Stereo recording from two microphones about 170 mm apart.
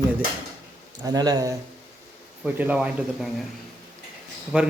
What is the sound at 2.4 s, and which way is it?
Speech, 10° right (ahead or behind).